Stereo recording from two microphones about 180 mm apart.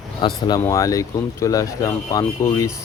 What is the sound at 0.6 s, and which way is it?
Speech, 15° left (ahead or behind).